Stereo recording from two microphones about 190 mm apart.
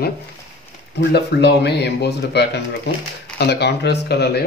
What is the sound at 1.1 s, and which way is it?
Speech, 60° left (ahead or behind).